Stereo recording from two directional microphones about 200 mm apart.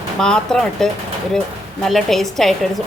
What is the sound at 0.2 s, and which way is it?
A woman's voice, 5° left (ahead or behind).